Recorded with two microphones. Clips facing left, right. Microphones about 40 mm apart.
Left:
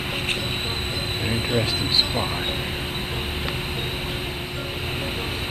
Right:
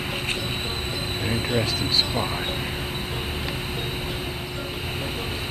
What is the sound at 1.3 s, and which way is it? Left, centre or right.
Speech, centre.